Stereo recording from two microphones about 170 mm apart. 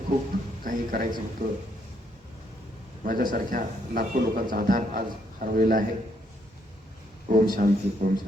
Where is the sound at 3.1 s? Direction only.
55° right (ahead or behind).